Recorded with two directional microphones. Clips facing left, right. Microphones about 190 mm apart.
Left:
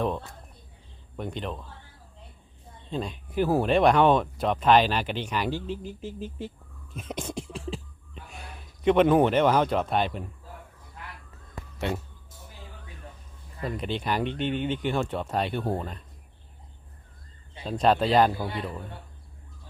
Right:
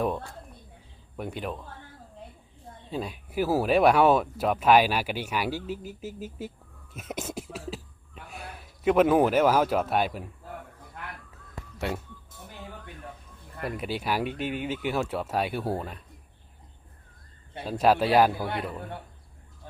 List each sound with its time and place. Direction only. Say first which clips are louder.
1.1 s speech: even; 5° right (ahead or behind)
2.9 s speech: left 1 dB; 5° right (ahead or behind)
6.9 s beatboxing: left 1 dB; 5° right (ahead or behind)
10.4 s a sound: right 5 dB; 60° right (ahead or behind)
13.7 s speech: left 1 dB; 5° right (ahead or behind)
17.7 s speech: even; 5° right (ahead or behind)
18.4 s a man's voice: right 1 dB; 60° right (ahead or behind)